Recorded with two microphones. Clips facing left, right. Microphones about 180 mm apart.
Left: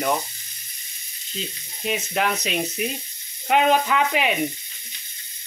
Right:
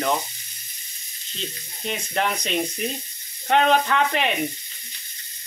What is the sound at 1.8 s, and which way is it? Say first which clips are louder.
Speech: left 1 dB; 5° left (ahead or behind).